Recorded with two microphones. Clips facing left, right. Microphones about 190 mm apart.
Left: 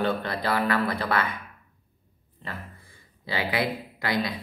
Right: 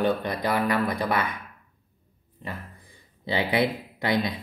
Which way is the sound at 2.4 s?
15° right (ahead or behind).